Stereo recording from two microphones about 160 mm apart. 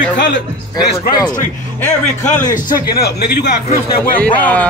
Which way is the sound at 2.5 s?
70° left (ahead or behind).